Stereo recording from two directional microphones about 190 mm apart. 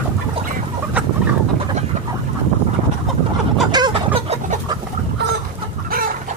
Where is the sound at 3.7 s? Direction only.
25° right (ahead or behind).